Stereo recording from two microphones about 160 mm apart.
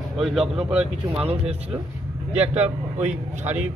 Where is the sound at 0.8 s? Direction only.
40° right (ahead or behind).